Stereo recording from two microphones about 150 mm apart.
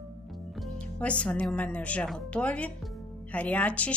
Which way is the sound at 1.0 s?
10° left (ahead or behind).